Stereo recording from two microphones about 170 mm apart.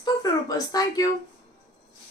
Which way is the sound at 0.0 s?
20° left (ahead or behind).